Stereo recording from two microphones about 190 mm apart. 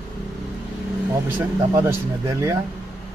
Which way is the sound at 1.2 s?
15° right (ahead or behind).